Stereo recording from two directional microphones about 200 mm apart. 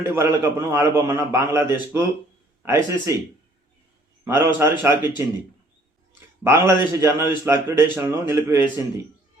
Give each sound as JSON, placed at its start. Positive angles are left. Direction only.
{"t": 0.2, "sound": "a man's voice", "side_deg": -15}
{"t": 4.3, "sound": "a man's voice", "side_deg": -15}
{"t": 6.4, "sound": "a man's voice", "side_deg": -15}